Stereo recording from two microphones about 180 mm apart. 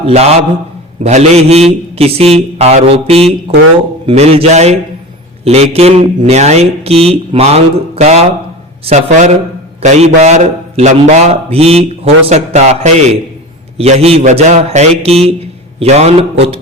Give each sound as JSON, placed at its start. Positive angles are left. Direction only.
{"t": 0.0, "sound": "a man's voice", "side_deg": -35}